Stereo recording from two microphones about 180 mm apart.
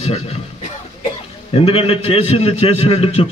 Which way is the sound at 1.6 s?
30° left (ahead or behind).